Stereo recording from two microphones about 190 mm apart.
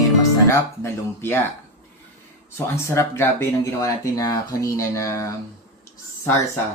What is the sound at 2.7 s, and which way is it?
Speech, 15° left (ahead or behind).